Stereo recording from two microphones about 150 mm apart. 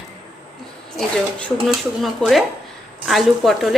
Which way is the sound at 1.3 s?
5° left (ahead or behind).